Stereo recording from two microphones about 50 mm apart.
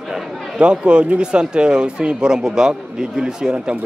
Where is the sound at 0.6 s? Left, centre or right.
Right.